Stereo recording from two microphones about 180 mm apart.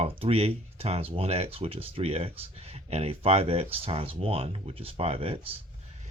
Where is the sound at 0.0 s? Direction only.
35° right (ahead or behind).